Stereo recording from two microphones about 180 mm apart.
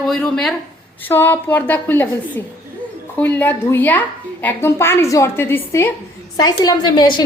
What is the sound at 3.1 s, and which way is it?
A woman's voice, 10° left (ahead or behind).